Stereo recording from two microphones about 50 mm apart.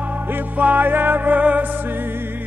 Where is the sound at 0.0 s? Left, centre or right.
Right.